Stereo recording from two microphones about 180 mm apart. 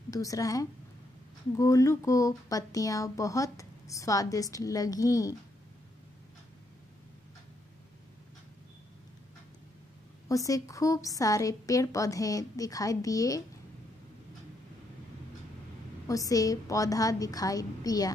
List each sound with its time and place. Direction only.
0.1 s a woman's voice: 20° left (ahead or behind)
10.2 s a woman's voice: 20° left (ahead or behind)
16.1 s a woman's voice: 20° left (ahead or behind)